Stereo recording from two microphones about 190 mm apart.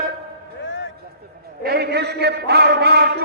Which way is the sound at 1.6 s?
60° right (ahead or behind).